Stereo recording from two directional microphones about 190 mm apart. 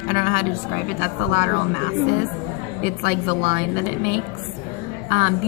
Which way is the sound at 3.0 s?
55° left (ahead or behind).